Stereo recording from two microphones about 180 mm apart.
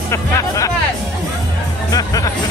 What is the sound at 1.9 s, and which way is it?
Music, 20° left (ahead or behind).